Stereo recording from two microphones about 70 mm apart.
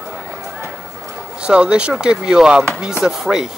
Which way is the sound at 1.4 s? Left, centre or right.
Centre.